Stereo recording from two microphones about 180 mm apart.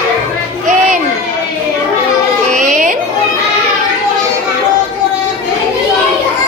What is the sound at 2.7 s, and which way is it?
Music, 50° right (ahead or behind).